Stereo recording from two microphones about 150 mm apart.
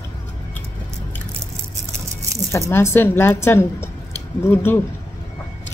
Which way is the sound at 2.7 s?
15° left (ahead or behind).